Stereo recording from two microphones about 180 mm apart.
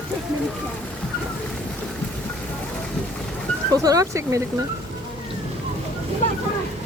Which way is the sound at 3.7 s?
20° right (ahead or behind).